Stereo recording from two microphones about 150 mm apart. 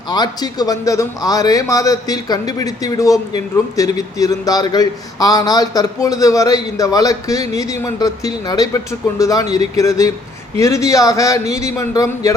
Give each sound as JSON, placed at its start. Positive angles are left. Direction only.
{"t": 0.1, "sound": "a man's voice", "side_deg": 25}